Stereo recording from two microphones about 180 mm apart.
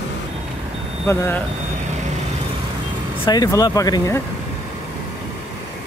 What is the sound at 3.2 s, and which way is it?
Speech, 20° left (ahead or behind).